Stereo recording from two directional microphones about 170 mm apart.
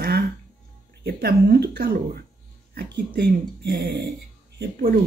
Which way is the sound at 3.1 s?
75° right (ahead or behind).